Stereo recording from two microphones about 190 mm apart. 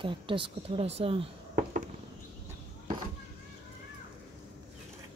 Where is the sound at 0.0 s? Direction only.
25° right (ahead or behind).